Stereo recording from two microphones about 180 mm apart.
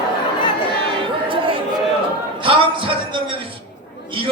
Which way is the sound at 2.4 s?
30° right (ahead or behind).